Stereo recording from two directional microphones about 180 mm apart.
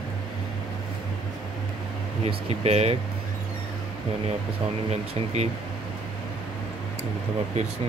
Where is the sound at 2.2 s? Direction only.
35° right (ahead or behind).